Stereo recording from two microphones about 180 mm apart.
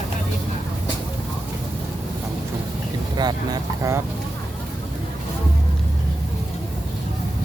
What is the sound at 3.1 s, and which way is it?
Vehicle, 20° right (ahead or behind).